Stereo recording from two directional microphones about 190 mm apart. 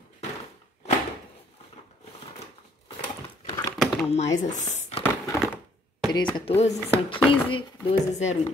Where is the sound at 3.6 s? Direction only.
Centre (ahead or behind).